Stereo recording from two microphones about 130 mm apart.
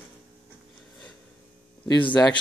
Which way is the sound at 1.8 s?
35° left (ahead or behind).